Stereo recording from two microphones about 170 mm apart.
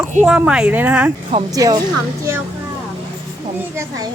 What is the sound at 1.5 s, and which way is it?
Speech, 20° right (ahead or behind).